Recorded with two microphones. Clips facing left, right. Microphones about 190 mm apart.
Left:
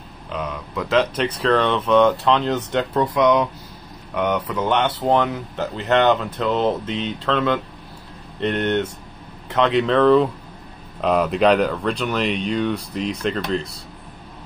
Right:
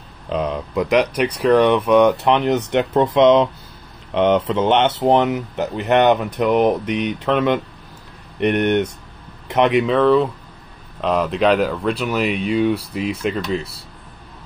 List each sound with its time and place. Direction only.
0.3 s speech: 30° right (ahead or behind)
0.7 s speech: 15° right (ahead or behind)
9.8 s speech: centre (ahead or behind)